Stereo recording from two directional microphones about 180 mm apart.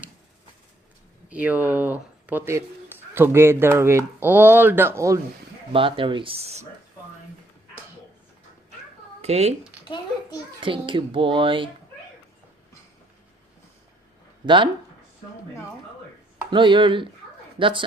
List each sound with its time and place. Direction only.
1.3 s speech: 10° right (ahead or behind)
5.7 s speech: 30° right (ahead or behind)
9.2 s speech: 35° right (ahead or behind)
9.8 s a child's voice: 25° left (ahead or behind)
10.6 s speech: 30° right (ahead or behind)
14.4 s speech: 25° right (ahead or behind)
16.5 s speech: 25° right (ahead or behind)